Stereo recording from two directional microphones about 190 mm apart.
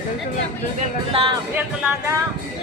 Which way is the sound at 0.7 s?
30° right (ahead or behind).